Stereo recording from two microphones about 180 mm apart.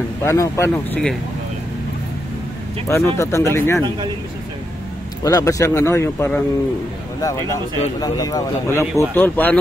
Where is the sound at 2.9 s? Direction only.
15° left (ahead or behind).